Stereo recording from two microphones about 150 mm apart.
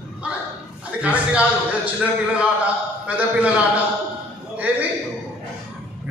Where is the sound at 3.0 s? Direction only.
10° right (ahead or behind).